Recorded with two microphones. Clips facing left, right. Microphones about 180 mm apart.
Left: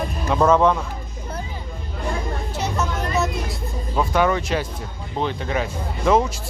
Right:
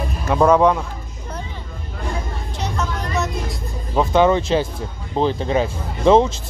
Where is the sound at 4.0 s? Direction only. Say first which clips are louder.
Right 4 dB; 25° right (ahead or behind).